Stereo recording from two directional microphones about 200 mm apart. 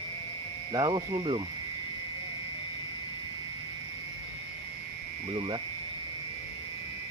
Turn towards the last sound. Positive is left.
turn(degrees=-25)  # may be behind; listen again after turning